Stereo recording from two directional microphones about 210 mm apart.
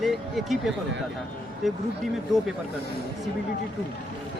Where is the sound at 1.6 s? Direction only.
Centre (ahead or behind).